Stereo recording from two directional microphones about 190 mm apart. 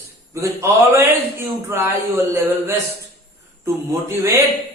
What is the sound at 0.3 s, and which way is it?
A man's voice, 15° right (ahead or behind).